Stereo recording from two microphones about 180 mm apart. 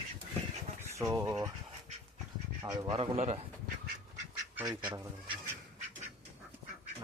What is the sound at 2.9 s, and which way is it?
Speech, 30° right (ahead or behind).